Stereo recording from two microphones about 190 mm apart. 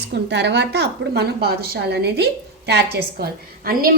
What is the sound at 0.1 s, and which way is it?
A woman's voice, 65° right (ahead or behind).